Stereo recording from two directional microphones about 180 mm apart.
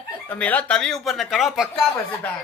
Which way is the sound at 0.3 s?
10° left (ahead or behind).